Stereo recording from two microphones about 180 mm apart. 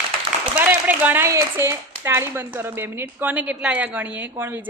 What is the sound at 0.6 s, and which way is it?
Speech, 10° right (ahead or behind).